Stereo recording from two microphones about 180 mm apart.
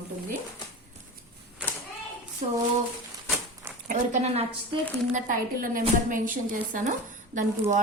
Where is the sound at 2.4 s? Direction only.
35° right (ahead or behind).